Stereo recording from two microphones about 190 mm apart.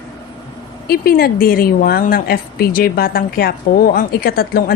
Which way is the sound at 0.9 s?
50° left (ahead or behind).